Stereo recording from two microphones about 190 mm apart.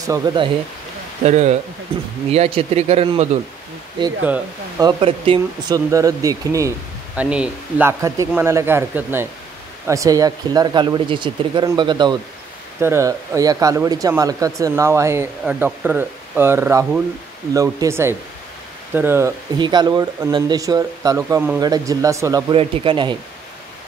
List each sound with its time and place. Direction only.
0.0 s speech: 20° right (ahead or behind)
1.2 s speech: 35° right (ahead or behind)
4.7 s speech: 25° right (ahead or behind)
5.9 s speech: 15° right (ahead or behind)
7.2 s speech: 5° right (ahead or behind)
19.6 s speech: 20° right (ahead or behind)